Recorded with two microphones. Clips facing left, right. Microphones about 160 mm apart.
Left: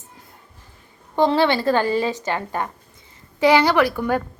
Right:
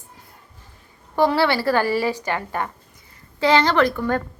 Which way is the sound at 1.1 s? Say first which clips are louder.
Left 1 dB; 20° left (ahead or behind).